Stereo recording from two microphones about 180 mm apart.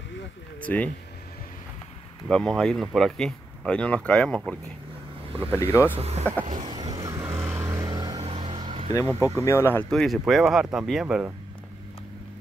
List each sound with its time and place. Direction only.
0.6 s speech: 5° left (ahead or behind)
2.2 s speech: centre (ahead or behind)
5.9 s speech: 35° right (ahead or behind)
6.4 s vehicle: 45° right (ahead or behind)
6.7 s vehicle: 20° right (ahead or behind)
8.2 s a sound: 30° right (ahead or behind)
8.9 s speech: 20° left (ahead or behind); by 11.3 s 5° right (ahead or behind)